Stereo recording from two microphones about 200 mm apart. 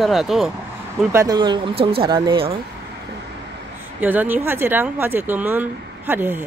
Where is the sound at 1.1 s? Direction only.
20° right (ahead or behind).